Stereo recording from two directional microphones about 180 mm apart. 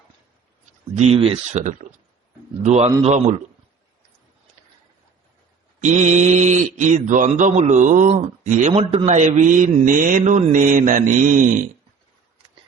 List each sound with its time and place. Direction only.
0.9 s speech: 35° right (ahead or behind)
5.8 s a man's voice: 40° right (ahead or behind)
8.7 s a man's voice: 30° right (ahead or behind)